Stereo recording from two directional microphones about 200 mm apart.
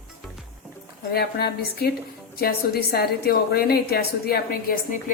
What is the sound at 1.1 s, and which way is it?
A woman's voice, 50° left (ahead or behind).